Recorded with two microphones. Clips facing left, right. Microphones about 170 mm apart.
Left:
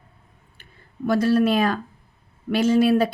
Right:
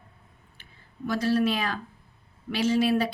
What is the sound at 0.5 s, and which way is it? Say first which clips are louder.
Speech: left 7 dB; 55° left (ahead or behind).